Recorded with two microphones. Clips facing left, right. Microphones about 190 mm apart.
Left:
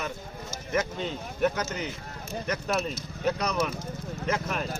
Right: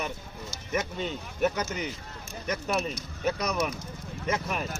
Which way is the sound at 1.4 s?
10° right (ahead or behind).